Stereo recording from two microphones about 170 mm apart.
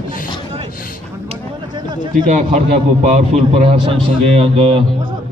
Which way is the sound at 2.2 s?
45° right (ahead or behind).